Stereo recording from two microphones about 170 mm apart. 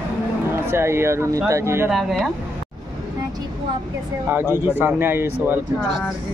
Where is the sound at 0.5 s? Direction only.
15° right (ahead or behind).